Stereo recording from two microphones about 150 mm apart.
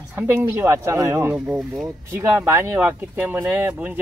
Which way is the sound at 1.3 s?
5° right (ahead or behind).